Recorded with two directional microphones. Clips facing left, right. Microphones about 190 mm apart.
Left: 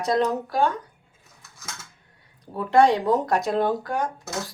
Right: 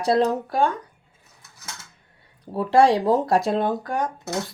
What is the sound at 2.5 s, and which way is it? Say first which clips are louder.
Speech: right 1 dB; 30° right (ahead or behind).